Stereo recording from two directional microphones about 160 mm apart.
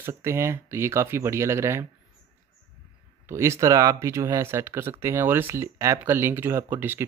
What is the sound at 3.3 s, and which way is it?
Speech, 15° right (ahead or behind).